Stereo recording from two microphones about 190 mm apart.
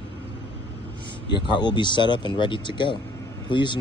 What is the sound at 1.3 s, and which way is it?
Speech, 25° left (ahead or behind).